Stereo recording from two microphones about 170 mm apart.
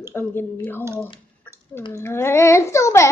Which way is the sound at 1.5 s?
10° left (ahead or behind).